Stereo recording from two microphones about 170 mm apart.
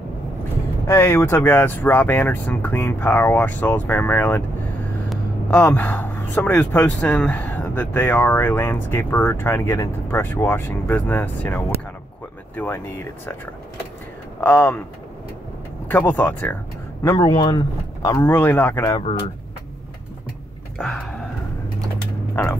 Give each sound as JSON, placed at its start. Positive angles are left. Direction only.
{"t": 0.8, "sound": "speech", "side_deg": 15}
{"t": 14.4, "sound": "speech", "side_deg": 10}
{"t": 15.9, "sound": "speech", "side_deg": 10}
{"t": 17.0, "sound": "speech", "side_deg": 20}
{"t": 18.9, "sound": "speech", "side_deg": 25}
{"t": 20.7, "sound": "speech", "side_deg": 5}
{"t": 22.3, "sound": "speech", "side_deg": 15}